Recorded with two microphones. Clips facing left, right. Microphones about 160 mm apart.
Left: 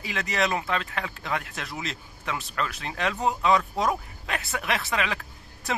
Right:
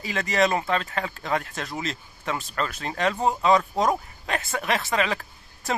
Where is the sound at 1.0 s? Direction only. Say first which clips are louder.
Right 4 dB; 40° right (ahead or behind).